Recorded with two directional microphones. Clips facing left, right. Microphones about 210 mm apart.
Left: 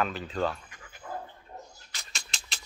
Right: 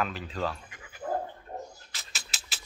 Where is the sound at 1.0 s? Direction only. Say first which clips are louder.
Right 8 dB; 50° right (ahead or behind).